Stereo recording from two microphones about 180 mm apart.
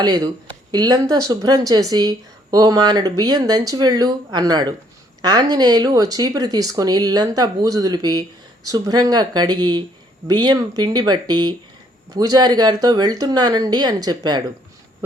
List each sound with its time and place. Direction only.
0.7 s speech: 20° right (ahead or behind)